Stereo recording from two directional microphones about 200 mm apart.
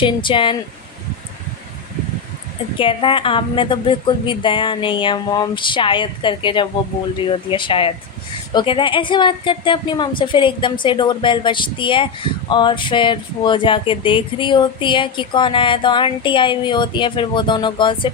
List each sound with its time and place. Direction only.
0.0 s a woman's voice: 25° left (ahead or behind)
2.7 s a woman's voice: 25° left (ahead or behind)